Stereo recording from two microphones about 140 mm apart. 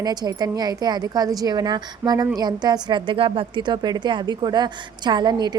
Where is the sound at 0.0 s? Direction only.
30° right (ahead or behind).